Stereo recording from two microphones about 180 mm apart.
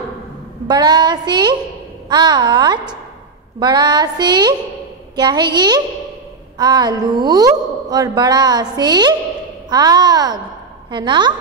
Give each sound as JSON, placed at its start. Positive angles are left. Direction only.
{"t": 0.7, "sound": "speech", "side_deg": -25}